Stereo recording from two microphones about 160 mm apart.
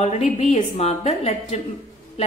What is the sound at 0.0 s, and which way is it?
A woman's voice, 45° left (ahead or behind).